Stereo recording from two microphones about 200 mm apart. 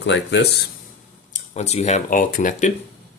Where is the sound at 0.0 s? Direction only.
65° left (ahead or behind).